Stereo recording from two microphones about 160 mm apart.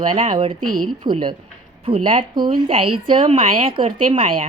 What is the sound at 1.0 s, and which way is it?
A woman's voice, 30° right (ahead or behind).